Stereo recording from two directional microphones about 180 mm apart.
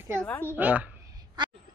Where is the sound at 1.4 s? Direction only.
25° right (ahead or behind).